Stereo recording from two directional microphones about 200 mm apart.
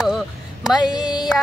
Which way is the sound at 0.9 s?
20° left (ahead or behind).